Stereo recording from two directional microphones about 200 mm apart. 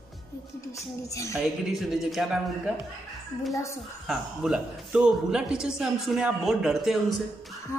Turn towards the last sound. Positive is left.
turn(degrees=0)  # may be behind; listen again after turning